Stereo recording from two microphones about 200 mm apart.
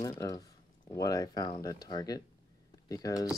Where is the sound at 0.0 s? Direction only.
15° left (ahead or behind).